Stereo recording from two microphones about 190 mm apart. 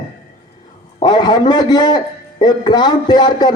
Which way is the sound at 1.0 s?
20° left (ahead or behind).